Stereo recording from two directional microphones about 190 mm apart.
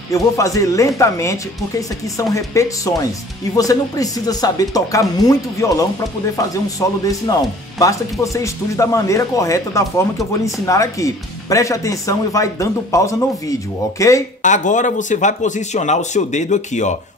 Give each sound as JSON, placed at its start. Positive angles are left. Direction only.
{"t": 0.1, "sound": "speech", "side_deg": 15}
{"t": 2.3, "sound": "speech", "side_deg": 15}
{"t": 14.4, "sound": "a man's voice", "side_deg": 40}